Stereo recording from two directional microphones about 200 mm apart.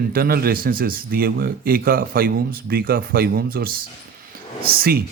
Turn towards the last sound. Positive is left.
turn(degrees=-50)  # may be behind; listen again after turning